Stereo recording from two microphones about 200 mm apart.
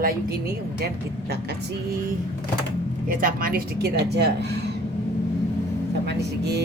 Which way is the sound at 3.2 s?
45° right (ahead or behind).